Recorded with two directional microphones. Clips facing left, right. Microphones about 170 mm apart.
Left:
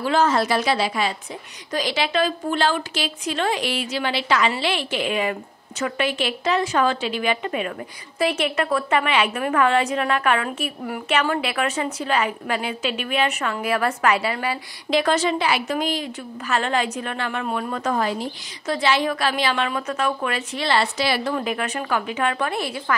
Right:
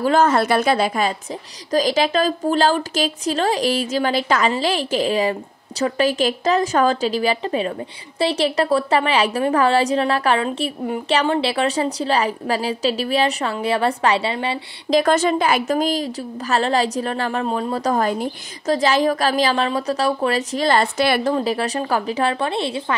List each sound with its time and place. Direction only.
0.0 s a woman's voice: 50° right (ahead or behind); by 14.6 s 25° right (ahead or behind)
14.9 s a woman's voice: 45° right (ahead or behind)
21.3 s a woman's voice: 35° right (ahead or behind)